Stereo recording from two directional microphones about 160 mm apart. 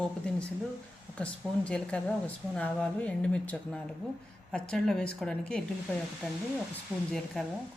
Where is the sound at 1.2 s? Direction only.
5° left (ahead or behind).